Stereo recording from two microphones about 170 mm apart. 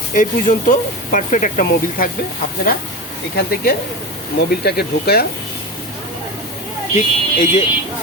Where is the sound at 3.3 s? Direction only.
65° left (ahead or behind).